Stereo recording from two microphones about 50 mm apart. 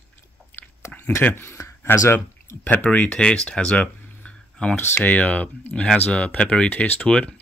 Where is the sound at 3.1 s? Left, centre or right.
Left.